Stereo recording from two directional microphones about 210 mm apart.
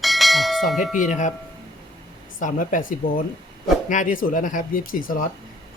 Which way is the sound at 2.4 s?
40° left (ahead or behind).